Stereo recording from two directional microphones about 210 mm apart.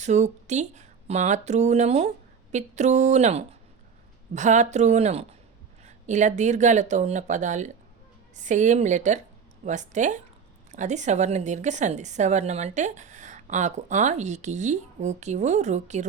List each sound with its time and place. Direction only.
0.0 s a woman's voice: 35° right (ahead or behind)